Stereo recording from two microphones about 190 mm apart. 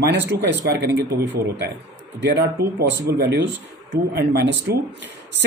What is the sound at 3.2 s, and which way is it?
Speech, 65° right (ahead or behind).